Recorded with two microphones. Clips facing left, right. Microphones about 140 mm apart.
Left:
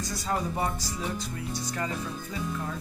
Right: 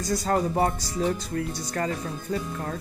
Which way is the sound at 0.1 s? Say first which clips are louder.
Right 8 dB; 45° right (ahead or behind).